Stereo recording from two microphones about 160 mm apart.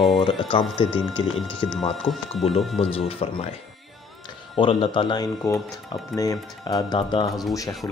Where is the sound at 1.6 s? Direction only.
30° left (ahead or behind).